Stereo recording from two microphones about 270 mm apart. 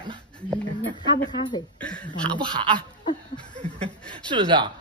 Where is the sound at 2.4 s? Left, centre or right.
Centre.